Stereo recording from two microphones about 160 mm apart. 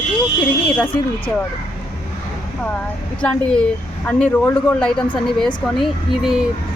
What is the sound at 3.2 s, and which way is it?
A man's voice, 5° left (ahead or behind).